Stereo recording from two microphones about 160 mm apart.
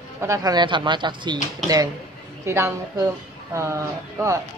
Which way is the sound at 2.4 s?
20° right (ahead or behind).